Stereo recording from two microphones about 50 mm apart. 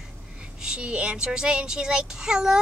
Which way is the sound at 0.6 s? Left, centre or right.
Centre.